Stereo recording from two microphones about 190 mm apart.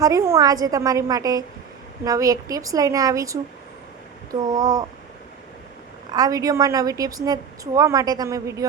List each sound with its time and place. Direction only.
0.0 s a woman's voice: 15° right (ahead or behind)
6.1 s a woman's voice: 20° right (ahead or behind)